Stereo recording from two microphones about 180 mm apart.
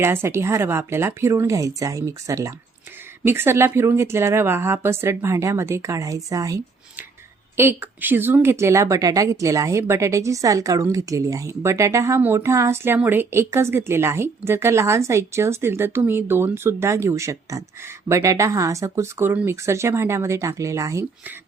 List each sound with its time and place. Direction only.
0.0 s a woman's voice: 15° right (ahead or behind)